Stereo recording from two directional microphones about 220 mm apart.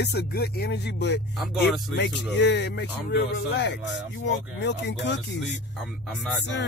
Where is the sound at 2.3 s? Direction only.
50° left (ahead or behind).